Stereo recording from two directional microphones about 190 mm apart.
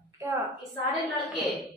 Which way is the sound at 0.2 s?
15° right (ahead or behind).